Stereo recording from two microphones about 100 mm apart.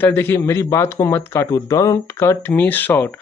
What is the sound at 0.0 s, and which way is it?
Speech, 25° left (ahead or behind).